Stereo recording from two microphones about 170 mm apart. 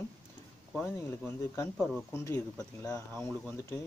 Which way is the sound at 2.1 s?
20° left (ahead or behind).